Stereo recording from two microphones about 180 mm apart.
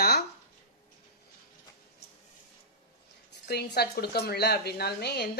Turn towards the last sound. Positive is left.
turn(degrees=65)  # may be behind; listen again after turning